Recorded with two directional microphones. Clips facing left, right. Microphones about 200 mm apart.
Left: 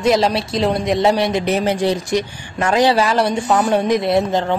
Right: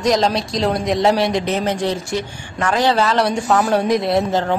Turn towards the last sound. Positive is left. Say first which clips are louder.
# left 1 dB
turn(degrees=0)  # may be behind; listen again after turning